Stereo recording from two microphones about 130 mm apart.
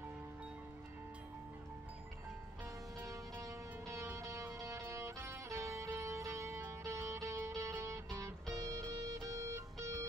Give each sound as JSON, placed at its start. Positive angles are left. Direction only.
{"t": 3.1, "sound": "music", "side_deg": -25}